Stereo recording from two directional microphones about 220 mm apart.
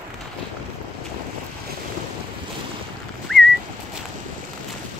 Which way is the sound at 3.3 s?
Centre (ahead or behind).